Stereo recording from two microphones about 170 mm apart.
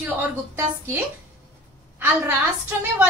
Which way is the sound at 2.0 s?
10° right (ahead or behind).